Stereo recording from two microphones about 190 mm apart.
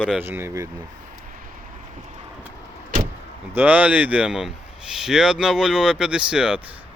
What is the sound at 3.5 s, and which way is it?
Speech, 10° right (ahead or behind).